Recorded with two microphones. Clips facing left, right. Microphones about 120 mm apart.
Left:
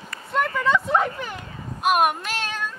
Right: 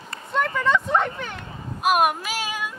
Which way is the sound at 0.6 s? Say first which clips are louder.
Left 1 dB; 5° left (ahead or behind).